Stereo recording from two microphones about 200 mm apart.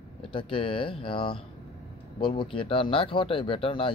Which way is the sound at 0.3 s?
25° left (ahead or behind).